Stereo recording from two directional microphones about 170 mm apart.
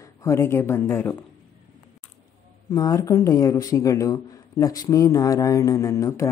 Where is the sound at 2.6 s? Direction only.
20° left (ahead or behind).